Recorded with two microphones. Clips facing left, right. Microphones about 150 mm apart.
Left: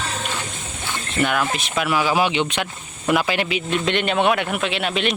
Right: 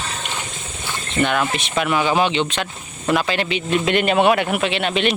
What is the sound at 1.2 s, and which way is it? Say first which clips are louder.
A man's voice: right 2 dB; 5° left (ahead or behind).